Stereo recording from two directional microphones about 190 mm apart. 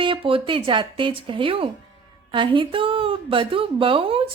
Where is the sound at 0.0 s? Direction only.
25° right (ahead or behind).